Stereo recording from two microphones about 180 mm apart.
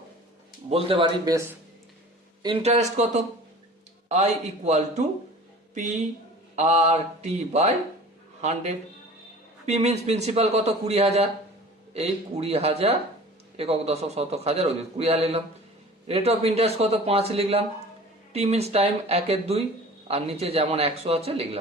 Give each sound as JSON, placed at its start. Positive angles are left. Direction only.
{"t": 0.7, "sound": "a man's voice", "side_deg": -30}
{"t": 2.4, "sound": "a man's voice", "side_deg": -30}